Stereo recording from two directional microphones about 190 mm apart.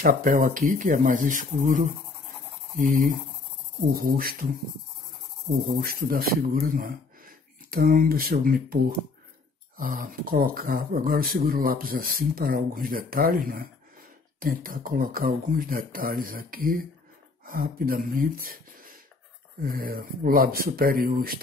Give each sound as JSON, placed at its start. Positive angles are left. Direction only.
{"t": 0.0, "sound": "speech", "side_deg": -45}
{"t": 5.7, "sound": "speech", "side_deg": -55}
{"t": 19.6, "sound": "speech", "side_deg": -50}